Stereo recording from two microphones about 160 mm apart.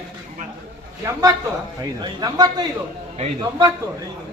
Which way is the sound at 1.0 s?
20° right (ahead or behind).